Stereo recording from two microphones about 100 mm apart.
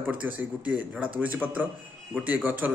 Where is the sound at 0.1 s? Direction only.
15° right (ahead or behind).